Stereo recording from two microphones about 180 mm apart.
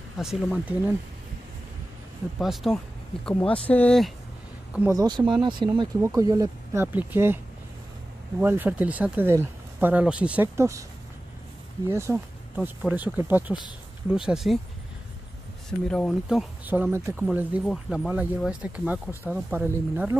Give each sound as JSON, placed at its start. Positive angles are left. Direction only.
{"t": 0.2, "sound": "speech", "side_deg": 0}
{"t": 2.4, "sound": "speech", "side_deg": 0}
{"t": 4.9, "sound": "speech", "side_deg": -25}
{"t": 8.4, "sound": "speech", "side_deg": -10}
{"t": 11.9, "sound": "speech", "side_deg": -15}
{"t": 15.9, "sound": "speech", "side_deg": 0}